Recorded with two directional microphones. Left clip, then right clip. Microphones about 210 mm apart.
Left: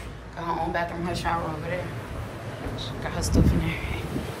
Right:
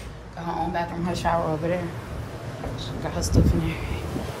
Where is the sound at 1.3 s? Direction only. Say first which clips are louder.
Right 4 dB; 40° right (ahead or behind).